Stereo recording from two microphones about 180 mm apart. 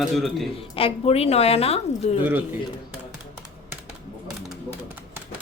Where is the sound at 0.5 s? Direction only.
30° left (ahead or behind).